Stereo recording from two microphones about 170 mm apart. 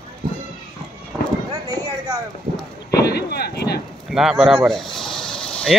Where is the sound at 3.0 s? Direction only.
70° left (ahead or behind).